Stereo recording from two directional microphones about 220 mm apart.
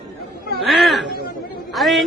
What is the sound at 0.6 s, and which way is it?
Speech, centre (ahead or behind).